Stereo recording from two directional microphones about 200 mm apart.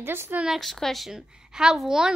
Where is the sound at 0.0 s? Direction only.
10° right (ahead or behind).